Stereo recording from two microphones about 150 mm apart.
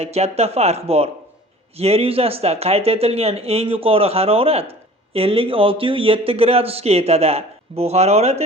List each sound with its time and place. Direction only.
0.0 s speech: 45° right (ahead or behind)